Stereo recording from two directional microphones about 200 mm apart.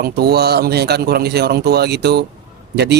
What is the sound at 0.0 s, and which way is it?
Speech, 50° right (ahead or behind).